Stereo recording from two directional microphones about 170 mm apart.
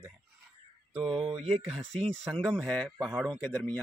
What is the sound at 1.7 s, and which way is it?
Speech, 5° left (ahead or behind).